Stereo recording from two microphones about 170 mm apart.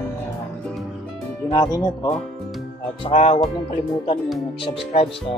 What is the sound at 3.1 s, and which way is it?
Speech, 40° left (ahead or behind).